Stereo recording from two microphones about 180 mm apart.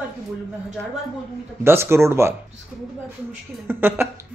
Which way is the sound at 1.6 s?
15° right (ahead or behind).